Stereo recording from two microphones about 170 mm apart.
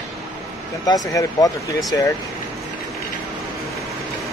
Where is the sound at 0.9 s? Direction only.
20° left (ahead or behind).